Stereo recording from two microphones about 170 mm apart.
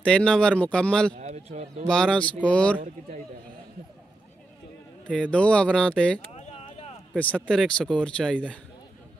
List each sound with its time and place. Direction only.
0.0 s speech: 5° left (ahead or behind)
1.1 s a man's voice: 45° right (ahead or behind)
1.9 s speech: 5° left (ahead or behind)
5.0 s speech: 5° left (ahead or behind)
6.3 s a sound: 35° left (ahead or behind)
7.2 s speech: 10° left (ahead or behind)